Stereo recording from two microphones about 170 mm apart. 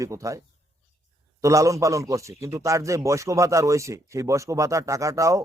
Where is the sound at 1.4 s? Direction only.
20° right (ahead or behind).